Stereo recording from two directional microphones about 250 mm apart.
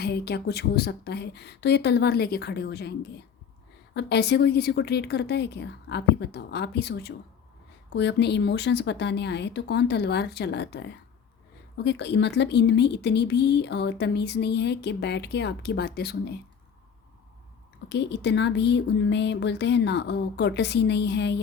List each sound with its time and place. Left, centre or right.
0.0 s a woman's voice: left
17.8 s speech: left